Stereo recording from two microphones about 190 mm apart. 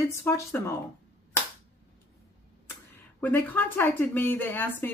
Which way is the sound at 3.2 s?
10° left (ahead or behind).